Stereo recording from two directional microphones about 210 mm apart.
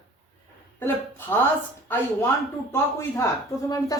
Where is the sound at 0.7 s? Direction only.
10° left (ahead or behind).